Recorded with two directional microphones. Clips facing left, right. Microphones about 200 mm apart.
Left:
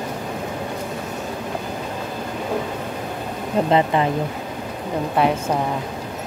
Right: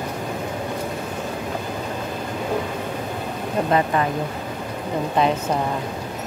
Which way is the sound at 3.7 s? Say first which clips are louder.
Left 2 dB; 20° left (ahead or behind).